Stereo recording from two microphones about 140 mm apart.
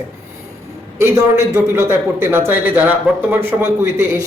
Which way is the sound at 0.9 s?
20° right (ahead or behind).